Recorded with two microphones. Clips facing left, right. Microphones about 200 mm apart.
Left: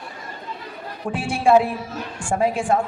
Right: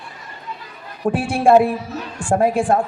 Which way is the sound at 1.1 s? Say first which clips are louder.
Right 3 dB; 55° right (ahead or behind).